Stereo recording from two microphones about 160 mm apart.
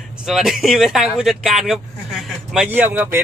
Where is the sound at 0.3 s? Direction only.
Centre (ahead or behind).